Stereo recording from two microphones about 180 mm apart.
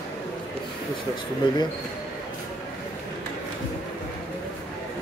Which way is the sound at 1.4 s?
25° left (ahead or behind).